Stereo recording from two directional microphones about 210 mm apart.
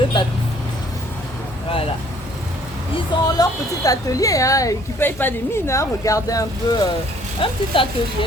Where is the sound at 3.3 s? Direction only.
15° left (ahead or behind).